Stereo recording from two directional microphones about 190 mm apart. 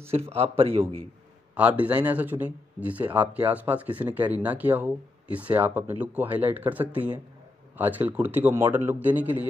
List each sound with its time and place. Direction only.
0.1 s a man's voice: 30° right (ahead or behind)
1.5 s speech: 5° right (ahead or behind)